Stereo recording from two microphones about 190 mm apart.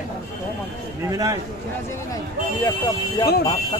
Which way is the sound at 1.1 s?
15° right (ahead or behind).